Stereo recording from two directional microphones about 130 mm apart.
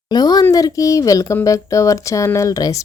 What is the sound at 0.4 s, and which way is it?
Speech, 25° left (ahead or behind).